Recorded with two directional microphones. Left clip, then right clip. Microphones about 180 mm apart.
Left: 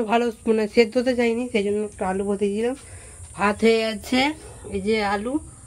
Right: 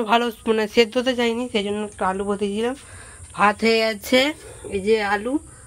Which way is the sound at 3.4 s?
25° right (ahead or behind).